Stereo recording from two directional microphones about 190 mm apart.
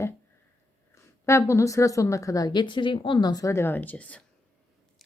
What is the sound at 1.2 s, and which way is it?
A woman's voice, 15° left (ahead or behind).